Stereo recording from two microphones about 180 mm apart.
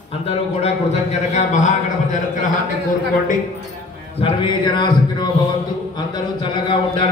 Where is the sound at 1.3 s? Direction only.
40° left (ahead or behind).